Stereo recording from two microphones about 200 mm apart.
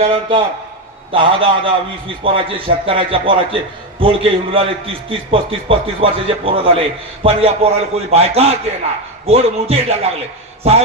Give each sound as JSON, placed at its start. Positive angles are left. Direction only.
{"t": 0.0, "sound": "a man's voice", "side_deg": -30}